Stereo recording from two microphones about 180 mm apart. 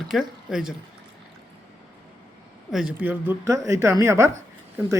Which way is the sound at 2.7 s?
5° right (ahead or behind).